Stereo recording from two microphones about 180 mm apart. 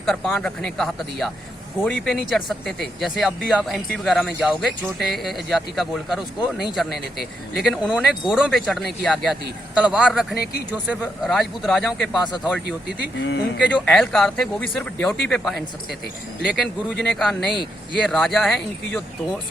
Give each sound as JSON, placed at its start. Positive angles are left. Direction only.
{"t": 0.0, "sound": "speech", "side_deg": 0}
{"t": 10.3, "sound": "speech", "side_deg": 60}
{"t": 11.0, "sound": "speech", "side_deg": 0}
{"t": 13.1, "sound": "speech", "side_deg": 90}
{"t": 13.8, "sound": "speech", "side_deg": 5}